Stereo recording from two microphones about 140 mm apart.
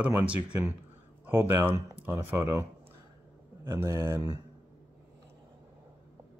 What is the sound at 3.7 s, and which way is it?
Speech, 20° right (ahead or behind).